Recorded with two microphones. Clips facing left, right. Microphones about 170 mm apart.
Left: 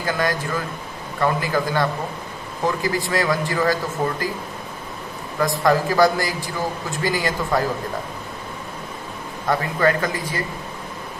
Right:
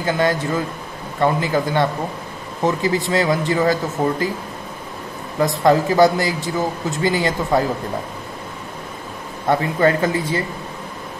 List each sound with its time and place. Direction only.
0.0 s a man's voice: 25° right (ahead or behind)
5.6 s a man's voice: 25° right (ahead or behind)
9.5 s a man's voice: 25° right (ahead or behind)